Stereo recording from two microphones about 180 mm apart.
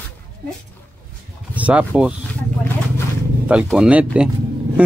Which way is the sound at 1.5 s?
5° right (ahead or behind).